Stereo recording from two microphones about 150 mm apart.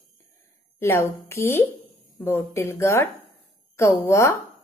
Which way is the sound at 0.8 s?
20° left (ahead or behind).